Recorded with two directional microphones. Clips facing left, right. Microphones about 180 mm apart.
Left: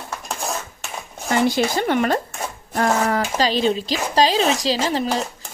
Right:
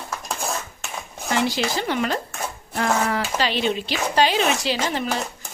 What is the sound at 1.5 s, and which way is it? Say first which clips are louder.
Speech: left 5 dB; 50° left (ahead or behind).